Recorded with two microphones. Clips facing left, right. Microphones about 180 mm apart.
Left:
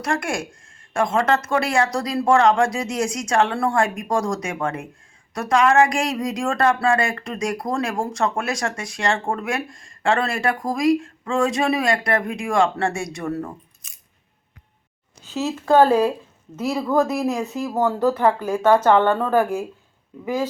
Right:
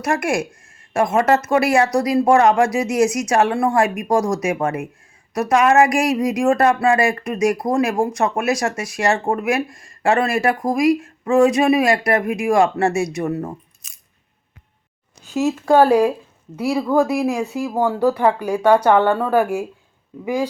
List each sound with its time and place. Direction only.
0.0 s speech: 20° right (ahead or behind)
15.2 s speech: 15° right (ahead or behind)